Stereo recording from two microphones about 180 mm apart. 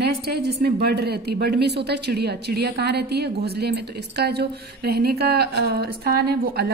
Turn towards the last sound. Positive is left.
turn(degrees=-60)  # may be behind; listen again after turning